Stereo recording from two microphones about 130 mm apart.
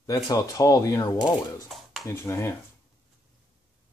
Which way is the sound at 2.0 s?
20° left (ahead or behind).